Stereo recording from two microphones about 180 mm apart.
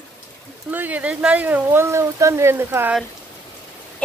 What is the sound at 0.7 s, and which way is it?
Speech, 10° right (ahead or behind).